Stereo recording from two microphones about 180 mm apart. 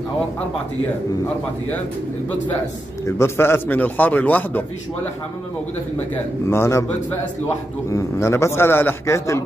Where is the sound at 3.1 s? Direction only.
15° left (ahead or behind).